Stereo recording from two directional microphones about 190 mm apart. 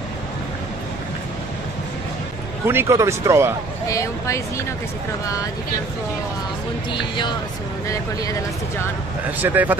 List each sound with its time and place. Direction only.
2.6 s speech: 10° right (ahead or behind)
3.8 s speech: 15° left (ahead or behind)
9.4 s speech: 10° right (ahead or behind)